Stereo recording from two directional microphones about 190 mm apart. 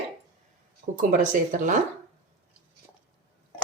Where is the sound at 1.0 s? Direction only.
45° right (ahead or behind).